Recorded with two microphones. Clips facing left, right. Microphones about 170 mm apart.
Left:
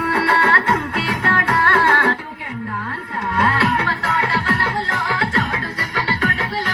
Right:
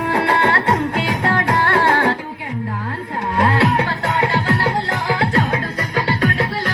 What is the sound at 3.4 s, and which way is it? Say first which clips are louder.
Music: right 3 dB; 35° right (ahead or behind).